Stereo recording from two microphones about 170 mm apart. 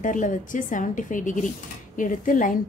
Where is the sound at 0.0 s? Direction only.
50° left (ahead or behind).